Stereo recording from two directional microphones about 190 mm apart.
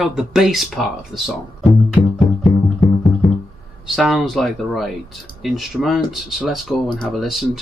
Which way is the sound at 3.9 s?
Centre (ahead or behind).